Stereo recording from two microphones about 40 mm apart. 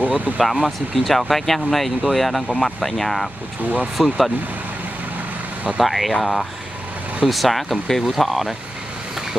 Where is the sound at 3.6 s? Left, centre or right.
Right.